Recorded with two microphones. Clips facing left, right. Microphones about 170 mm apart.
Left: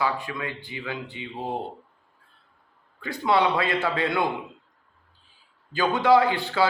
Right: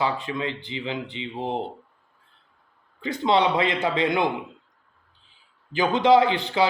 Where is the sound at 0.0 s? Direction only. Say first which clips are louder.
Right 2 dB; 20° right (ahead or behind).